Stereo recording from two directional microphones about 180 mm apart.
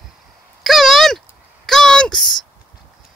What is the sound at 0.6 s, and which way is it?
Speech, centre (ahead or behind).